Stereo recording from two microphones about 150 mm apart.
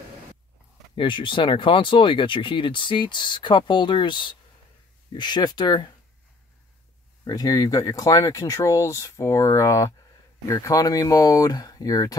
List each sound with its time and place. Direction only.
0.9 s speech: 35° left (ahead or behind)
7.2 s speech: 25° left (ahead or behind)